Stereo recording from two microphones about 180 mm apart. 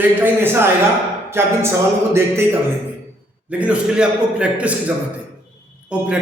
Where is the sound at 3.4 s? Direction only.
5° right (ahead or behind).